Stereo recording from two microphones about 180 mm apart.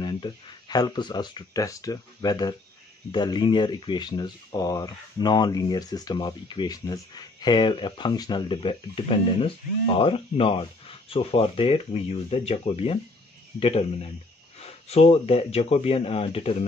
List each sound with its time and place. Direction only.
0.0 s speech: 25° left (ahead or behind)